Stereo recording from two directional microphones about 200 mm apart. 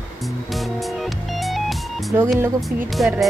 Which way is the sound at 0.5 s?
Centre (ahead or behind).